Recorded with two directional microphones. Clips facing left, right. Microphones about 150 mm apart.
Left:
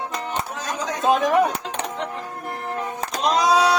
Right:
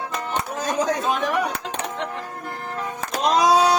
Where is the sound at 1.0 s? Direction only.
30° left (ahead or behind).